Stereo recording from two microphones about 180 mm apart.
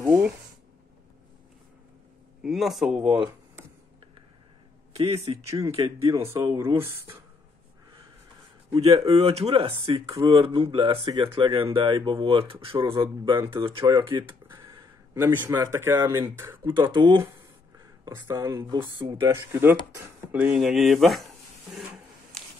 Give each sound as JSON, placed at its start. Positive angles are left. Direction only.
{"t": 0.0, "sound": "a sound", "side_deg": -15}
{"t": 2.4, "sound": "speech", "side_deg": 0}
{"t": 5.5, "sound": "speech", "side_deg": -20}
{"t": 8.7, "sound": "speech", "side_deg": -20}
{"t": 9.0, "sound": "speech", "side_deg": -35}
{"t": 15.1, "sound": "speech", "side_deg": -10}
{"t": 16.6, "sound": "speech", "side_deg": -25}
{"t": 17.3, "sound": "a sound", "side_deg": -20}
{"t": 18.8, "sound": "speech", "side_deg": -25}
{"t": 19.1, "sound": "speech", "side_deg": -15}